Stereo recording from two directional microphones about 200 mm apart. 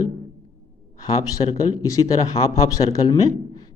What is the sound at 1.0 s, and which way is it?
A man's voice, 20° left (ahead or behind).